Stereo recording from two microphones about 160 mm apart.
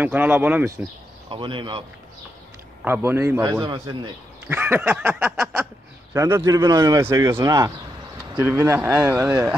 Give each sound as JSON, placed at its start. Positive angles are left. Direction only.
{"t": 0.0, "sound": "a man's voice", "side_deg": -10}
{"t": 1.3, "sound": "speech", "side_deg": -30}
{"t": 2.8, "sound": "a man's voice", "side_deg": -15}